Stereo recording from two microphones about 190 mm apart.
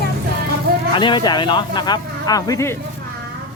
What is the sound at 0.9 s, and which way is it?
Speech, 25° left (ahead or behind).